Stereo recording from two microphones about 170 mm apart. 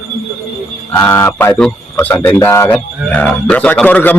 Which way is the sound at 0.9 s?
15° left (ahead or behind).